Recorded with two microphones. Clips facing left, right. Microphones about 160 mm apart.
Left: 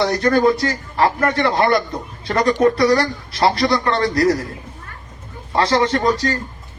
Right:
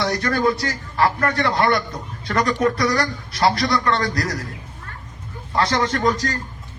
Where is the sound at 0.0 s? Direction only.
30° left (ahead or behind).